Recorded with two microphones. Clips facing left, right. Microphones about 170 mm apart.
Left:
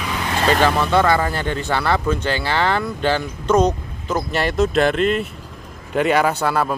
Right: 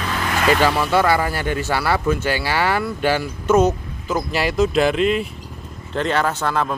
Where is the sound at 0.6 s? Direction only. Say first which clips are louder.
Left 1 dB; 10° right (ahead or behind).